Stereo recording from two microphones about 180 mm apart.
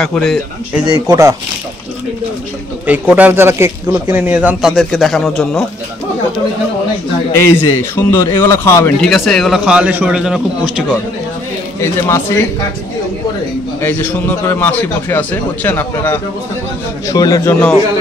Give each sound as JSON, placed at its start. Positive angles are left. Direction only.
{"t": 0.0, "sound": "a man's voice", "side_deg": 0}
{"t": 0.9, "sound": "speech", "side_deg": -20}
{"t": 2.9, "sound": "speech", "side_deg": -10}
{"t": 7.3, "sound": "a man's voice", "side_deg": 15}
{"t": 9.0, "sound": "a man's voice", "side_deg": 0}
{"t": 11.8, "sound": "a man's voice", "side_deg": 15}
{"t": 13.8, "sound": "a man's voice", "side_deg": 15}